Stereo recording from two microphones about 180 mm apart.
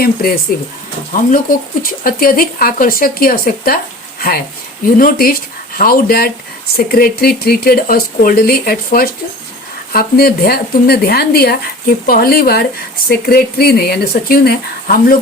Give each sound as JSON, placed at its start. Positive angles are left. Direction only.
{"t": 0.0, "sound": "speech", "side_deg": 55}